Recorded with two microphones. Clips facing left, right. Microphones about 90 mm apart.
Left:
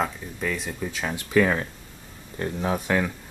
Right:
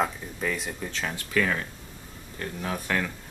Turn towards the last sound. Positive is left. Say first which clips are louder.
# left 5 dB
turn(degrees=15)  # may be behind; listen again after turning